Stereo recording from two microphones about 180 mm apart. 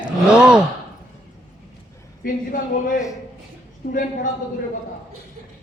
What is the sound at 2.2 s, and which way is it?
Speech, 50° left (ahead or behind).